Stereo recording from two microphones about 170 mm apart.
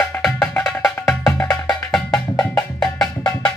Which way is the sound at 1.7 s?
5° left (ahead or behind).